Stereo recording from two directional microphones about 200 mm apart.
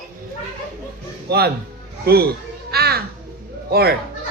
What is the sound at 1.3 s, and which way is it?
Speech, 55° right (ahead or behind).